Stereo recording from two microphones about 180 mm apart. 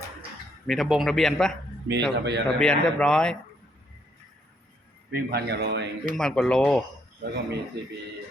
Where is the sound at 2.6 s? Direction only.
5° left (ahead or behind).